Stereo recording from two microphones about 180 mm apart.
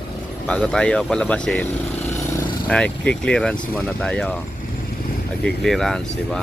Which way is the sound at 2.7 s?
5° left (ahead or behind).